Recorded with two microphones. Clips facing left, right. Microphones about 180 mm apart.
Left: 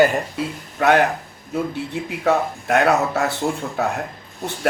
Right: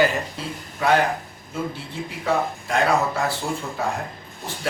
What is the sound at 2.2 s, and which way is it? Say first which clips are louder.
Speech: left 4 dB; 65° left (ahead or behind).